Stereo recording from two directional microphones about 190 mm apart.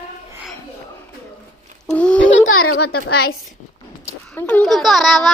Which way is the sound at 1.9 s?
5° left (ahead or behind).